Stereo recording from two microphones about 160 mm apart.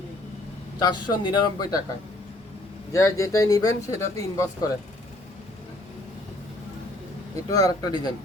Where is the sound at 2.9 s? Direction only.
20° left (ahead or behind).